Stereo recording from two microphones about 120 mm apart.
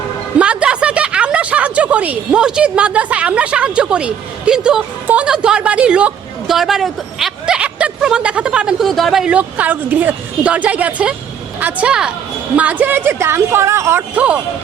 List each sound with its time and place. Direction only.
0.3 s a woman's voice: 10° right (ahead or behind)
14.2 s a woman's voice: 10° right (ahead or behind)